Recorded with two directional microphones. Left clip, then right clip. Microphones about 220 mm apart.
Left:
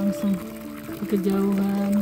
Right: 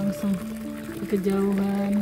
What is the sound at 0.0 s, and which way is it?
Music, 20° left (ahead or behind).